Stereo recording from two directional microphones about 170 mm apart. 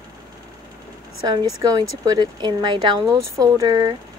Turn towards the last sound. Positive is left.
turn(degrees=-25)  # may be behind; listen again after turning